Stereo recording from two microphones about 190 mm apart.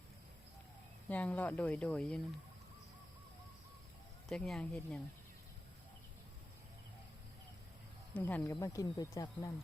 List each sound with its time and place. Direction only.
1.1 s speech: 10° left (ahead or behind)
4.3 s speech: 5° left (ahead or behind)
8.1 s speech: 5° left (ahead or behind)